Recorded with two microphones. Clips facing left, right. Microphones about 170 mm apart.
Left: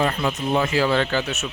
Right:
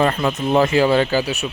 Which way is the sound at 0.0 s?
50° right (ahead or behind).